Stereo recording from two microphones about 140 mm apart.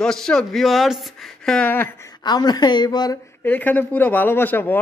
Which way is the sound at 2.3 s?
30° left (ahead or behind).